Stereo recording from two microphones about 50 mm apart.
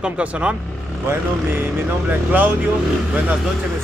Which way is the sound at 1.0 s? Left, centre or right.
Right.